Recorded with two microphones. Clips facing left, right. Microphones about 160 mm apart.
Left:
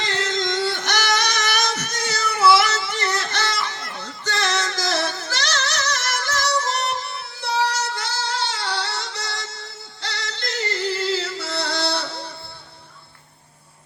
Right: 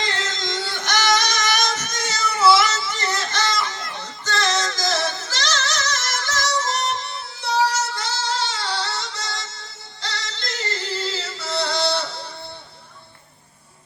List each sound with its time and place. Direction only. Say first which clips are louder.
0.3 s music: left 5 dB; 60° left (ahead or behind)